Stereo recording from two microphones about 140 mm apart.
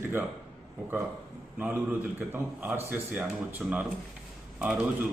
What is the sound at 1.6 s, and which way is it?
Speech, 10° right (ahead or behind).